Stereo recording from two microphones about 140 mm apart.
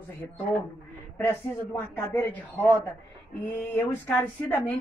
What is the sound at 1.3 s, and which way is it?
Speech, 20° left (ahead or behind).